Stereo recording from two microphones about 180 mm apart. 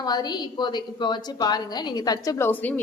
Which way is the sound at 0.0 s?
20° left (ahead or behind).